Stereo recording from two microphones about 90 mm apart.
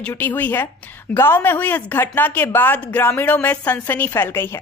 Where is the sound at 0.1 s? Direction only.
20° left (ahead or behind).